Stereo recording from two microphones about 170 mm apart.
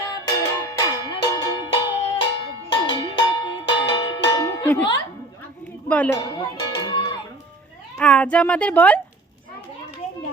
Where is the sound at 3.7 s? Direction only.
90° left.